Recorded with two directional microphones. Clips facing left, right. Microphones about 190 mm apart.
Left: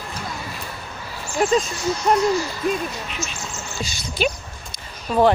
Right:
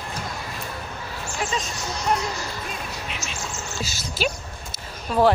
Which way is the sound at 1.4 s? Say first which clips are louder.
Left 10 dB; 45° left (ahead or behind).